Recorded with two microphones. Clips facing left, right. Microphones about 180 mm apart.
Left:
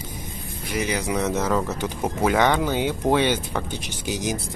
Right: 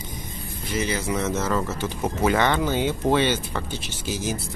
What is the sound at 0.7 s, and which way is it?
Speech, 15° left (ahead or behind).